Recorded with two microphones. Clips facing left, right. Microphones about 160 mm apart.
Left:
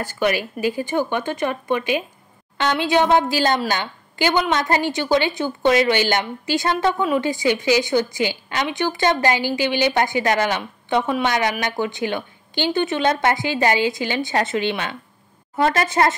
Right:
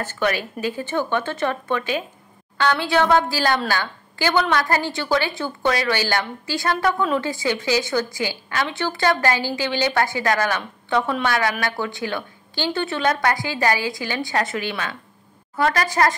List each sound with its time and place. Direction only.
0.0 s a woman's voice: 10° left (ahead or behind)